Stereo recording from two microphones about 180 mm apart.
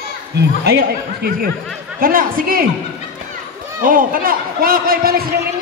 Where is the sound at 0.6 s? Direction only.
60° right (ahead or behind).